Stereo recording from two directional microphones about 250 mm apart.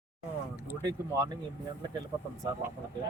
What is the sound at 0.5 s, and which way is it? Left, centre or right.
Speech, centre.